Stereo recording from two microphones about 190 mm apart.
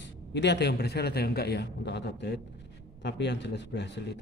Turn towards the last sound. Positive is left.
turn(degrees=65)  # may be behind; listen again after turning